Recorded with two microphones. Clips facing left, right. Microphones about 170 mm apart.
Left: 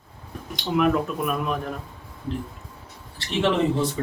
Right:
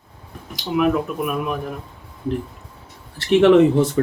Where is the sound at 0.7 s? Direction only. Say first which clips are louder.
Right 2 dB; 5° right (ahead or behind).